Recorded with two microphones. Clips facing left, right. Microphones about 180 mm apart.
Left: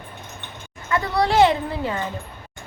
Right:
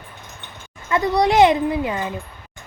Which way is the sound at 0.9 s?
20° right (ahead or behind).